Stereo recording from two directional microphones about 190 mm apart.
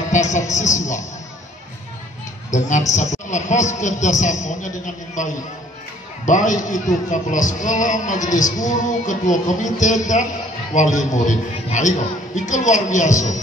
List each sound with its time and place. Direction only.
0.1 s a man's voice: 40° left (ahead or behind)
2.5 s a man's voice: 40° left (ahead or behind)